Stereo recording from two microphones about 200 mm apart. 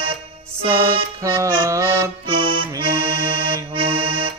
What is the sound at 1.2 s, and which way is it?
Music, 15° right (ahead or behind).